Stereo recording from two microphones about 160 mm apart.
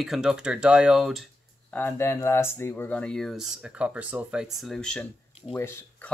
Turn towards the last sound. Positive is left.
turn(degrees=10)  # may be behind; listen again after turning